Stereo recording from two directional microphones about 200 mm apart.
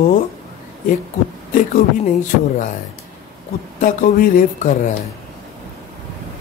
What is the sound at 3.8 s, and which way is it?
Speech, 40° left (ahead or behind).